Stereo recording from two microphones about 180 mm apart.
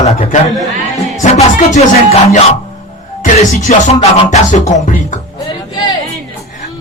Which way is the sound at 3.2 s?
40° left (ahead or behind).